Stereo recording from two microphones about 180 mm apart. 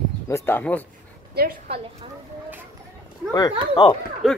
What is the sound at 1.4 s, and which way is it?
Speech, 60° right (ahead or behind).